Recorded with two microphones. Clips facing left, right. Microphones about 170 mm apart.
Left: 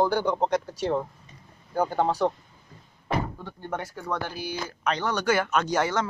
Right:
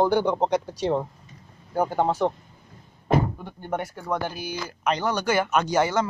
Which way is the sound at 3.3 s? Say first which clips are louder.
Right 3 dB; 15° right (ahead or behind).